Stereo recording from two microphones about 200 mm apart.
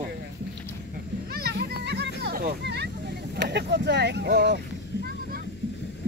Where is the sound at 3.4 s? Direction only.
55° right (ahead or behind).